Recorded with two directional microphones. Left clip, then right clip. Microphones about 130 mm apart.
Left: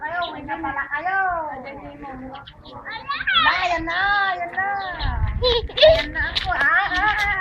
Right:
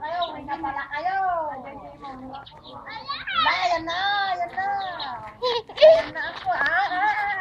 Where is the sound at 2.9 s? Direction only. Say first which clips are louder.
Left 8 dB; 25° right (ahead or behind).